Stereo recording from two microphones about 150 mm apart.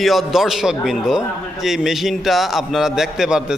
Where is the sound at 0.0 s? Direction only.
Centre (ahead or behind).